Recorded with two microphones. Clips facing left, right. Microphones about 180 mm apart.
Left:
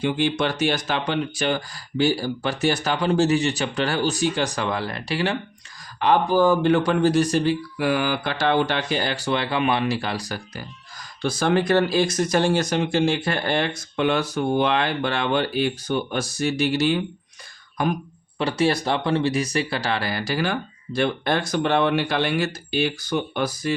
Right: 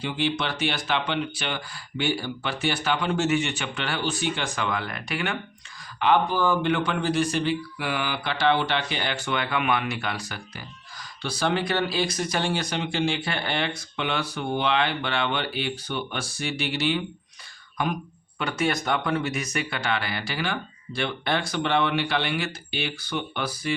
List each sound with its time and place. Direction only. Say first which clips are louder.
0.0 s speech: left 5 dB; 50° left (ahead or behind)
11.2 s speech: left 5 dB; 45° left (ahead or behind)
18.3 s speech: left 5 dB; 30° left (ahead or behind)